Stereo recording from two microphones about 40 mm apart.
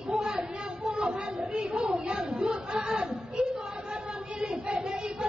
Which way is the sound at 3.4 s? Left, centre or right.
Right.